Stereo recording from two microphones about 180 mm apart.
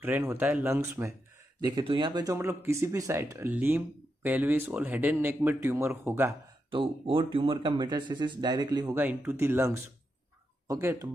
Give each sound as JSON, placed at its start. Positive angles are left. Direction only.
{"t": 0.0, "sound": "speech", "side_deg": -15}
{"t": 1.8, "sound": "speech", "side_deg": -25}
{"t": 6.7, "sound": "speech", "side_deg": -30}